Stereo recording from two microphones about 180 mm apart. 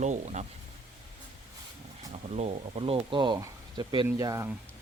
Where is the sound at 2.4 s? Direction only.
35° right (ahead or behind); by 4.5 s 20° right (ahead or behind).